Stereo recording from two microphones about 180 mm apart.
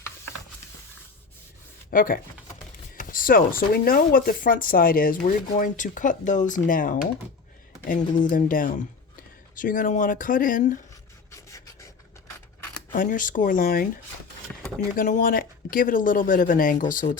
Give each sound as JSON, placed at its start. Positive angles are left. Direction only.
{"t": 1.9, "sound": "speech", "side_deg": 50}
{"t": 11.3, "sound": "filing", "side_deg": 15}
{"t": 12.9, "sound": "speech", "side_deg": 50}
{"t": 14.5, "sound": "a sound", "side_deg": 5}
{"t": 14.9, "sound": "speech", "side_deg": 45}